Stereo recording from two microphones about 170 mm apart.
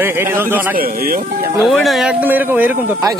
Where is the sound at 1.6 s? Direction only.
Centre (ahead or behind).